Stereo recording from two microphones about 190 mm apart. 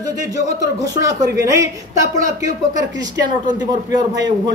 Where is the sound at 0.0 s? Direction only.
20° right (ahead or behind).